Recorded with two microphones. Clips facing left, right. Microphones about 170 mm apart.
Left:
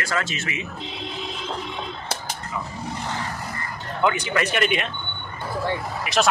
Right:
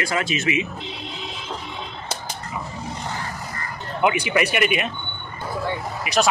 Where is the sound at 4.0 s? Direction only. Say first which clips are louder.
Right 2 dB; 15° right (ahead or behind).